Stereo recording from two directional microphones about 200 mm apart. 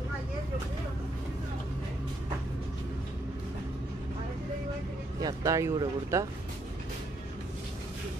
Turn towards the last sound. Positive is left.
turn(degrees=-15)  # may be behind; listen again after turning